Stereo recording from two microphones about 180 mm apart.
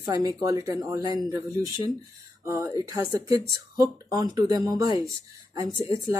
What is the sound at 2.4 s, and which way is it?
Speech, 20° right (ahead or behind).